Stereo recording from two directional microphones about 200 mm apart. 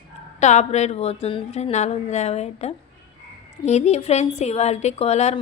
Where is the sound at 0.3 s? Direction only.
35° left (ahead or behind).